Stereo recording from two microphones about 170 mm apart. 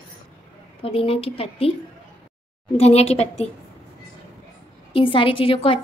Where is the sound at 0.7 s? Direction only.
35° left (ahead or behind).